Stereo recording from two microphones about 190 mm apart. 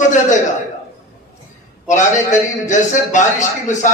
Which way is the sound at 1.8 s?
40° left (ahead or behind).